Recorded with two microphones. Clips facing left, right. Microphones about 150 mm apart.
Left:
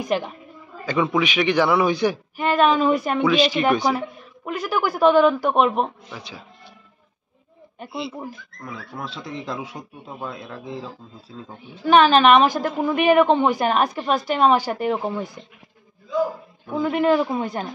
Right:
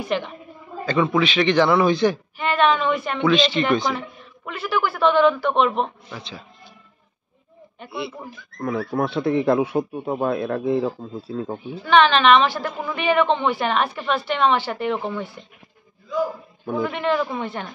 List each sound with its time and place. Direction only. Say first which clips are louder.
0.8 s a man's voice: right 1 dB; 10° left (ahead or behind)
2.3 s a sound: left 1 dB; 40° left (ahead or behind)
2.8 s speech: left 3 dB; 40° left (ahead or behind)
3.2 s a man's voice: even; 10° left (ahead or behind)
4.5 s speech: left 1 dB; 40° left (ahead or behind)
5.8 s a man's voice: left 1 dB; 10° left (ahead or behind)
8.5 s speech: right 15 dB; 60° right (ahead or behind)
11.8 s a woman's voice: left 2 dB; 40° left (ahead or behind)
16.9 s speech: left 8 dB; 40° left (ahead or behind)